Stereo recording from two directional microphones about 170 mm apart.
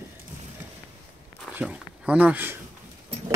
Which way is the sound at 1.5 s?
5° right (ahead or behind).